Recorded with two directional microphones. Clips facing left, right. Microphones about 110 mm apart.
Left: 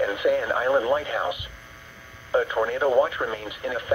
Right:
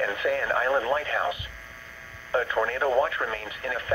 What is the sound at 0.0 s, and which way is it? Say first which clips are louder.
Speech: left 4 dB; 15° left (ahead or behind).